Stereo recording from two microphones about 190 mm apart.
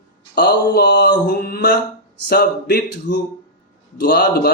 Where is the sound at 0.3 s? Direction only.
60° left (ahead or behind).